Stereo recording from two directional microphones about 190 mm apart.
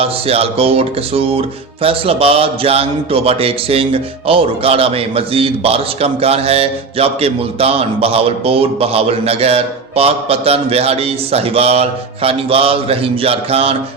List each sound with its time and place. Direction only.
0.0 s music: 30° right (ahead or behind)